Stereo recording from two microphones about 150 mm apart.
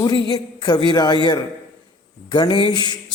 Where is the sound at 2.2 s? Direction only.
30° left (ahead or behind).